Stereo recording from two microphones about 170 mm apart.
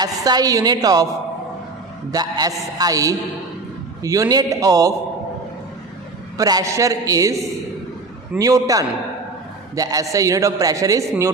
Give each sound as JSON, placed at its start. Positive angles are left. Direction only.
{"t": 0.0, "sound": "a man's voice", "side_deg": -25}
{"t": 2.1, "sound": "a man's voice", "side_deg": -25}
{"t": 6.3, "sound": "a man's voice", "side_deg": -20}